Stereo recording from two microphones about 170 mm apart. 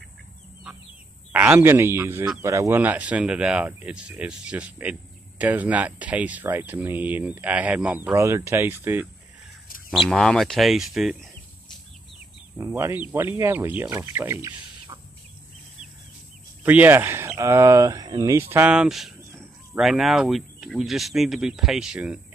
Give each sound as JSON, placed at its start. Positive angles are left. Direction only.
{"t": 1.3, "sound": "speech", "side_deg": -10}
{"t": 9.8, "sound": "speech", "side_deg": 0}
{"t": 12.5, "sound": "speech", "side_deg": -15}
{"t": 16.6, "sound": "speech", "side_deg": -10}
{"t": 18.5, "sound": "speech", "side_deg": -10}